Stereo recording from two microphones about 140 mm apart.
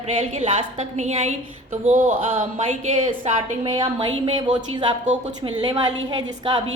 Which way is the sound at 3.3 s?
55° right (ahead or behind).